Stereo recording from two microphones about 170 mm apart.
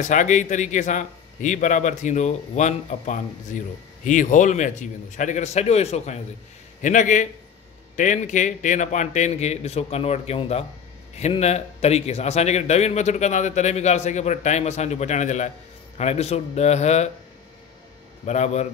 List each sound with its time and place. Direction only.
0.0 s a man's voice: 45° left (ahead or behind)
18.2 s a man's voice: 40° left (ahead or behind)